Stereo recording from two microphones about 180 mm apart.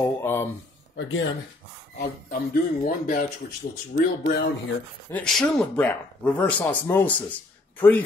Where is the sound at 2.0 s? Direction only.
60° left (ahead or behind).